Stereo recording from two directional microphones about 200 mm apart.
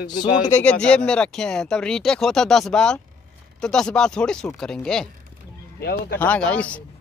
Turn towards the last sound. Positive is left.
turn(degrees=5)  # may be behind; listen again after turning